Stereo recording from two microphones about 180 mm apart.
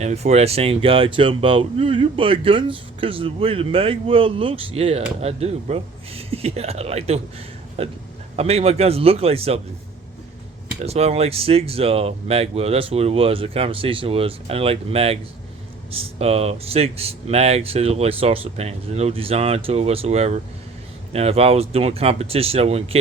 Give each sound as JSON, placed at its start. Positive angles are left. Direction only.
{"t": 0.0, "sound": "speech", "side_deg": -40}
{"t": 10.8, "sound": "speech", "side_deg": -35}